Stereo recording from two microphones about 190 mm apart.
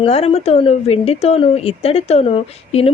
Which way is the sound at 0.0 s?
30° left (ahead or behind).